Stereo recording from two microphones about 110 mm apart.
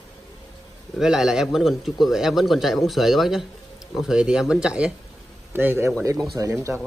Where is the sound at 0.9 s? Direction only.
5° right (ahead or behind).